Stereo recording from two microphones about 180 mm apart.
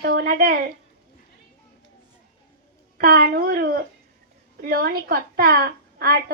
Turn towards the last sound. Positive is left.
turn(degrees=-60)  # may be behind; listen again after turning